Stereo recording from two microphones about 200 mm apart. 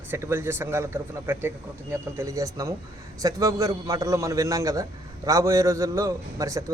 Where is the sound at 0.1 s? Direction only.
10° right (ahead or behind).